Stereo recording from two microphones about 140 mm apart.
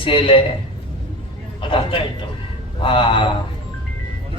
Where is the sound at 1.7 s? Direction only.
35° left (ahead or behind).